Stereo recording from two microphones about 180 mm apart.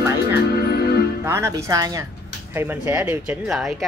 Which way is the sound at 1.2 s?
15° right (ahead or behind).